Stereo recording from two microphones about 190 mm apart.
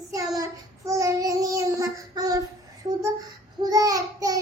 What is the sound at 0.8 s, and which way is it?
Child singing, 15° right (ahead or behind).